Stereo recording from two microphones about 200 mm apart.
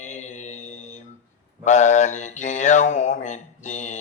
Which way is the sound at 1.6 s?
35° left (ahead or behind).